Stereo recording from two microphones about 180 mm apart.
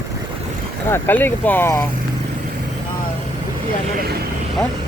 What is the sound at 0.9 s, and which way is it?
Speech, 10° left (ahead or behind).